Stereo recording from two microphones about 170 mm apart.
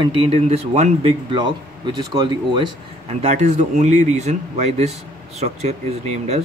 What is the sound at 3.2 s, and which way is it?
Speech, 40° right (ahead or behind).